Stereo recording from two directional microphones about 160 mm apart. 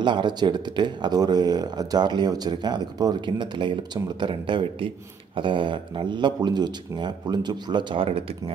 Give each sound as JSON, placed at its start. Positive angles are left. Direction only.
{"t": 0.0, "sound": "speech", "side_deg": -30}